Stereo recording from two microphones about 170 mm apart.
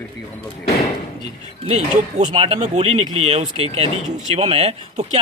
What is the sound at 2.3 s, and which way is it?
Speech, 35° right (ahead or behind).